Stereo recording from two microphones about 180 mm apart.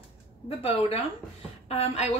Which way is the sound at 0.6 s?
35° left (ahead or behind).